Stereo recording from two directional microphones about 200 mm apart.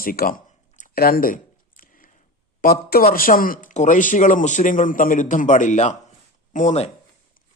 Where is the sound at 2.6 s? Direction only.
50° left (ahead or behind).